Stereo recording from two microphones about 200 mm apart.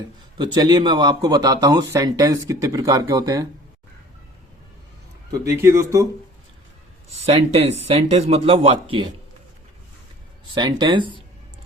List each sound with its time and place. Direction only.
0.3 s speech: 20° right (ahead or behind)
5.3 s speech: 15° right (ahead or behind)
7.1 s speech: 30° right (ahead or behind)
10.5 s speech: 20° right (ahead or behind)